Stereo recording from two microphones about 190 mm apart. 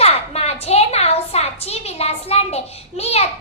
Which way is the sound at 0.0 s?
30° left (ahead or behind).